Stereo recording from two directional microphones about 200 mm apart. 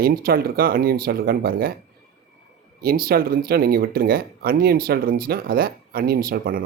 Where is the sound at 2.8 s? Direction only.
45° right (ahead or behind).